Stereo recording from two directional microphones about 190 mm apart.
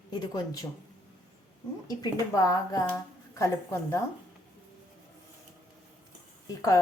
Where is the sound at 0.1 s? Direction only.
20° left (ahead or behind).